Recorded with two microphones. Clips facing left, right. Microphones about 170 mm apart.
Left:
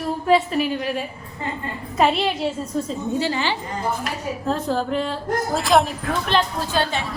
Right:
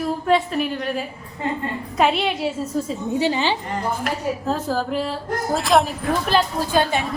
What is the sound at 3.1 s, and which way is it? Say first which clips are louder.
Speech: right 3 dB; 20° right (ahead or behind).